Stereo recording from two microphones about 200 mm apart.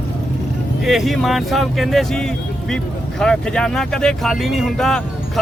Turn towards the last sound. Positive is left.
turn(degrees=0)  # may be behind; listen again after turning